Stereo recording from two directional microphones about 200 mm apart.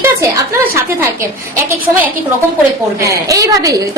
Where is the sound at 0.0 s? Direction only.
15° right (ahead or behind).